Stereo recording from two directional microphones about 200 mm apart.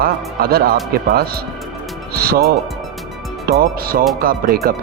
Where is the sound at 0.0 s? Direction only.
50° right (ahead or behind).